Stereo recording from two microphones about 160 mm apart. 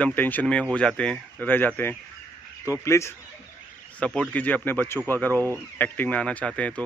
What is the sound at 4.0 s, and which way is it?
Speech, 5° left (ahead or behind).